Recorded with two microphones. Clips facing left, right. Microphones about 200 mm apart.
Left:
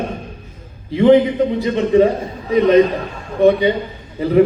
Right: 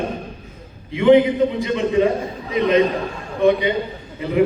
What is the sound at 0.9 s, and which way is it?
A man's voice, 35° left (ahead or behind).